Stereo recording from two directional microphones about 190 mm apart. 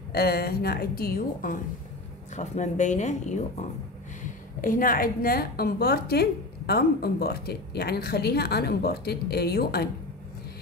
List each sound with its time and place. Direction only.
0.1 s a woman's voice: 55° left (ahead or behind); by 3.4 s 40° left (ahead or behind)
4.6 s a woman's voice: 45° left (ahead or behind)